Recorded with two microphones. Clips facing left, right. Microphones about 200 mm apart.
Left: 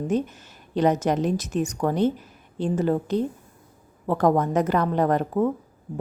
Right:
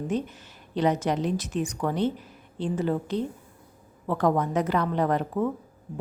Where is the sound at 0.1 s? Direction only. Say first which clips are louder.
Left 4 dB; 45° left (ahead or behind).